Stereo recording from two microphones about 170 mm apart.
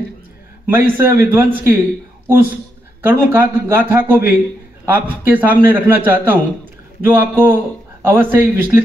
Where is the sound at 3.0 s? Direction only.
10° right (ahead or behind).